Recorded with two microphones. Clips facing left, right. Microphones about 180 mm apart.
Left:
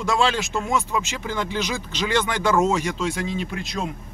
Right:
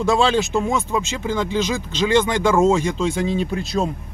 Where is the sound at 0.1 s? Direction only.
30° right (ahead or behind).